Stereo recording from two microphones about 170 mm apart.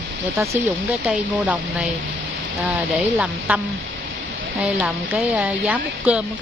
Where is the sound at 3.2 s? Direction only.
5° right (ahead or behind).